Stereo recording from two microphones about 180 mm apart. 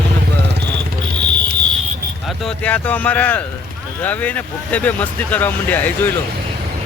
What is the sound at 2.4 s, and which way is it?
Speech, 10° left (ahead or behind).